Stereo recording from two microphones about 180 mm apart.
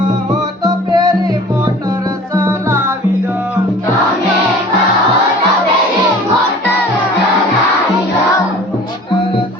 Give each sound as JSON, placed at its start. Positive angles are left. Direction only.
{"t": 0.6, "sound": "music", "side_deg": -20}
{"t": 2.3, "sound": "music", "side_deg": -15}